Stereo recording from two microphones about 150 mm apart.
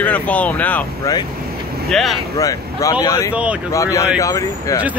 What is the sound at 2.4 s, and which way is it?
Speech, 25° left (ahead or behind).